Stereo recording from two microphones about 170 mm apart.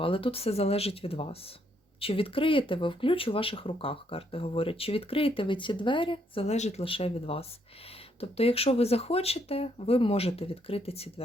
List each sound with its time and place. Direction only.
0.0 s speech: 30° left (ahead or behind)